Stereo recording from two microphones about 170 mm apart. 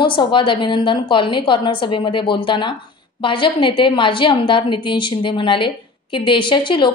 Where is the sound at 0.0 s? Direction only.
30° left (ahead or behind).